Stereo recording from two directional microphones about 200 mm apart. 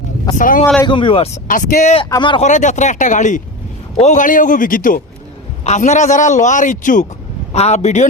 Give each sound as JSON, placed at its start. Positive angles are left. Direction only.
{"t": 0.3, "sound": "speech", "side_deg": 40}
{"t": 0.6, "sound": "speech", "side_deg": 10}
{"t": 0.9, "sound": "speech", "side_deg": 25}
{"t": 1.5, "sound": "a man's voice", "side_deg": 40}
{"t": 2.0, "sound": "speech", "side_deg": 20}
{"t": 2.4, "sound": "a man's voice", "side_deg": 40}